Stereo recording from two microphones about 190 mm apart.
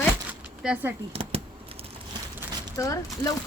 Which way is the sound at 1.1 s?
30° right (ahead or behind).